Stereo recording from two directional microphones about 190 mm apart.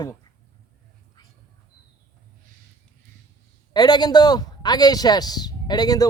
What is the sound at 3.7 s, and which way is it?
A man's voice, 20° left (ahead or behind).